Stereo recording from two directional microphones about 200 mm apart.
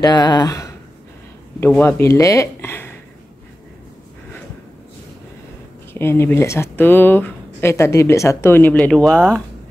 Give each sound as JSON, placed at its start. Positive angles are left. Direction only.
{"t": 0.0, "sound": "speech", "side_deg": 20}
{"t": 5.9, "sound": "speech", "side_deg": 10}